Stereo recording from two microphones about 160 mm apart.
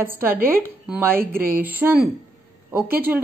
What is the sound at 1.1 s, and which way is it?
Speech, 65° right (ahead or behind).